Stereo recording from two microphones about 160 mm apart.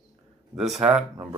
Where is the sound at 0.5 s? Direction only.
Centre (ahead or behind).